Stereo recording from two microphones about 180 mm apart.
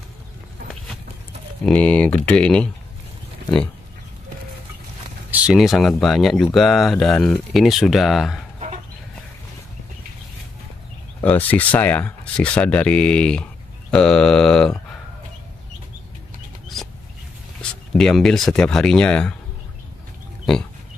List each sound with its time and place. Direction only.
1.6 s speech: 5° left (ahead or behind)
5.3 s speech: 5° right (ahead or behind)
11.2 s speech: 10° left (ahead or behind)
17.6 s speech: 5° left (ahead or behind)
20.5 s speech: centre (ahead or behind)